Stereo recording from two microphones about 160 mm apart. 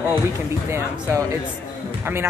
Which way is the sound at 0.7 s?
15° right (ahead or behind).